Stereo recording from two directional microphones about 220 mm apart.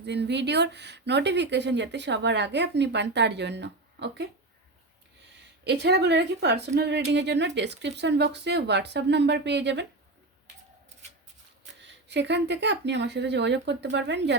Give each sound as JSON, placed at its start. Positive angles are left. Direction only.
{"t": 0.0, "sound": "speech", "side_deg": -50}
{"t": 5.6, "sound": "speech", "side_deg": -50}
{"t": 11.8, "sound": "speech", "side_deg": -50}